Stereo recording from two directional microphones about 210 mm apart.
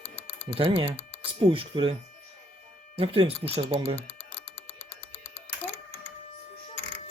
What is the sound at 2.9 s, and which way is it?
Speech, 25° right (ahead or behind).